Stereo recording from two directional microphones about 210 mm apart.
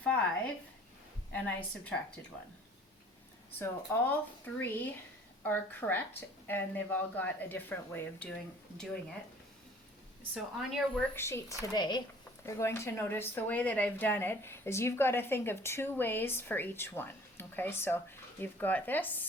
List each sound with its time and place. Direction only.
0.0 s a sound: 5° left (ahead or behind)
1.3 s a woman's voice: 5° left (ahead or behind)
3.6 s a woman's voice: 10° left (ahead or behind)
10.3 s a woman's voice: centre (ahead or behind)
11.1 s a woman's voice: 10° left (ahead or behind)